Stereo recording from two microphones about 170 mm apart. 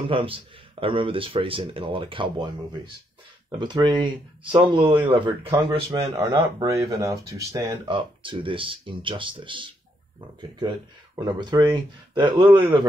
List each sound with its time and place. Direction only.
0.0 s speech: 30° right (ahead or behind)
3.5 s speech: 25° right (ahead or behind)
7.8 s speech: 30° right (ahead or behind)
11.2 s speech: 25° right (ahead or behind)